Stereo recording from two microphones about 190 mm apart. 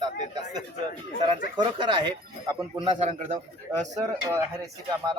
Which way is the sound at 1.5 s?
25° right (ahead or behind).